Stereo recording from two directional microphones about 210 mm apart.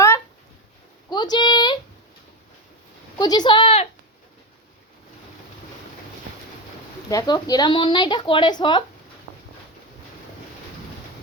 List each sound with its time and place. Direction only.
1.1 s speech: 20° left (ahead or behind)
3.2 s speech: 20° left (ahead or behind)
7.1 s speech: 20° left (ahead or behind)